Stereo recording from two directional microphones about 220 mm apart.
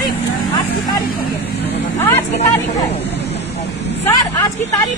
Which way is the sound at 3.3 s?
30° left (ahead or behind).